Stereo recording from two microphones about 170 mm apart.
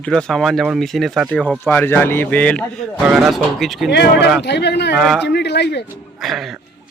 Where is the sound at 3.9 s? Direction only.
90° left.